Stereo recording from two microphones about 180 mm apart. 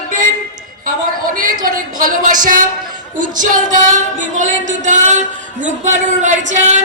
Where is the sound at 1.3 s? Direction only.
50° right (ahead or behind).